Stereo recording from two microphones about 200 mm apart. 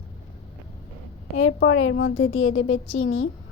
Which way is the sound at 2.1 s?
85° left.